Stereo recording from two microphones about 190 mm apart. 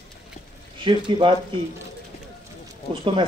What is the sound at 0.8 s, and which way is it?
Speech, 25° right (ahead or behind).